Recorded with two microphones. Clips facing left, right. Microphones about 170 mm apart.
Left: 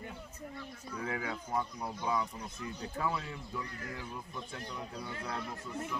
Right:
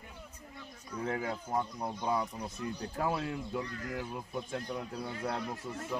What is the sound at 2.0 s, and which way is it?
Speech, 45° right (ahead or behind).